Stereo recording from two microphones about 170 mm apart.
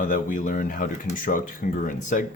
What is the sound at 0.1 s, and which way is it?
Speech, 50° left (ahead or behind).